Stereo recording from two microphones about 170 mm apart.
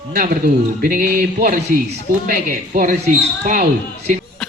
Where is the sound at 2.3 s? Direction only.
55° right (ahead or behind).